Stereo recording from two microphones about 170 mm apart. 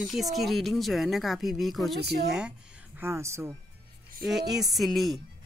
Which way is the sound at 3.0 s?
15° right (ahead or behind).